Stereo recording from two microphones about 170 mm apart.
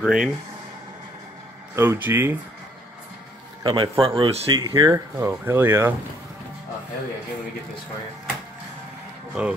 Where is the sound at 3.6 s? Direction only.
30° right (ahead or behind).